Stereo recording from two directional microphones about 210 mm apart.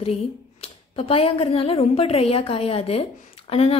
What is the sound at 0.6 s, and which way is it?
A woman's voice, 25° left (ahead or behind).